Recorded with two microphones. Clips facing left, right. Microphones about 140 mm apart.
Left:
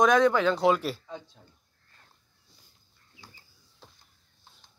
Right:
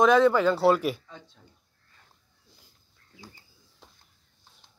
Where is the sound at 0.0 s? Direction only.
5° right (ahead or behind).